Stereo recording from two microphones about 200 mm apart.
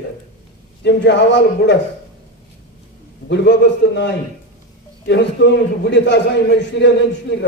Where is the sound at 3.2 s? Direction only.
60° left (ahead or behind).